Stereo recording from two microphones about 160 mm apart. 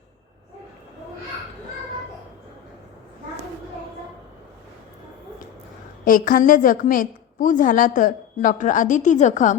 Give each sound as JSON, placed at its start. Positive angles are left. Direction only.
{"t": 6.1, "sound": "a woman's voice", "side_deg": 60}